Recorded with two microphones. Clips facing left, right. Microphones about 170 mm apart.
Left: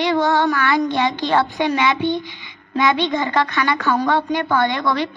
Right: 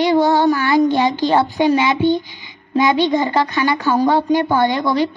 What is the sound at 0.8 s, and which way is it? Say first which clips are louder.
Speech: right 5 dB; 40° right (ahead or behind).